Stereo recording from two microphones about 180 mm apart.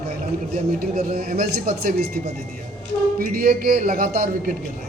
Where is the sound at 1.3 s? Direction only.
60° right (ahead or behind).